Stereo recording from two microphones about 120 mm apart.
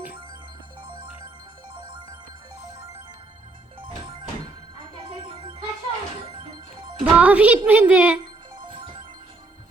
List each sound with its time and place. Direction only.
1.7 s music: 40° right (ahead or behind)
3.8 s music: 45° right (ahead or behind)
7.0 s speech: 10° right (ahead or behind)